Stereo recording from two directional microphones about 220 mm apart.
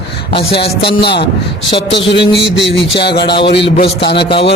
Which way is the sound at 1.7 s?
55° left (ahead or behind).